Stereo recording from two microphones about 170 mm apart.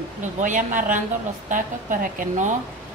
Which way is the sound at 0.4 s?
50° right (ahead or behind).